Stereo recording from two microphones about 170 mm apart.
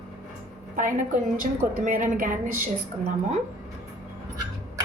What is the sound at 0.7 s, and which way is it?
A woman's voice, 50° right (ahead or behind).